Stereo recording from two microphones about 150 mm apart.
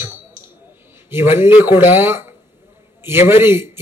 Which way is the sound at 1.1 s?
15° right (ahead or behind).